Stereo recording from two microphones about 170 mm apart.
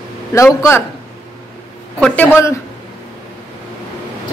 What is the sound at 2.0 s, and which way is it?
Speech, 10° left (ahead or behind).